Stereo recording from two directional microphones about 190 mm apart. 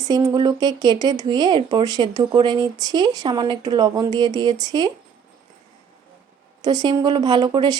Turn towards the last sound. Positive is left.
turn(degrees=-20)  # may be behind; listen again after turning